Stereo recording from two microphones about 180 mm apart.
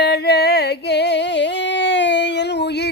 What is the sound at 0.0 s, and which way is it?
Singing, 65° left (ahead or behind).